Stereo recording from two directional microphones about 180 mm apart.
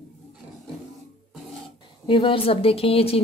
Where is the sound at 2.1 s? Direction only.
30° left (ahead or behind).